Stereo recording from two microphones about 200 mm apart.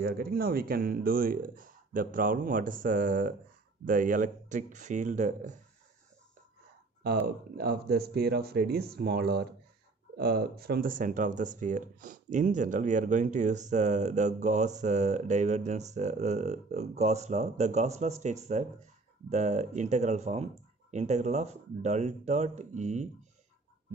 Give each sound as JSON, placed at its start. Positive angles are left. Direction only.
{"t": 0.0, "sound": "speech", "side_deg": -50}
{"t": 7.2, "sound": "speech", "side_deg": -50}